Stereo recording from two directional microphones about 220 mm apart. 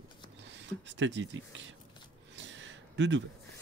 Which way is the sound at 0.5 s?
55° right (ahead or behind).